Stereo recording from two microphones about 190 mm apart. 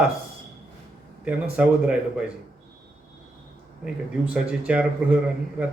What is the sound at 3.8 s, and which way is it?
Speech, 5° right (ahead or behind).